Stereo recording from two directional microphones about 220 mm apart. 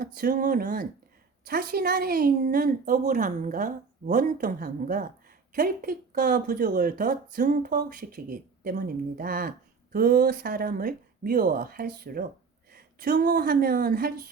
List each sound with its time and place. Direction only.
0.0 s speech: 40° right (ahead or behind)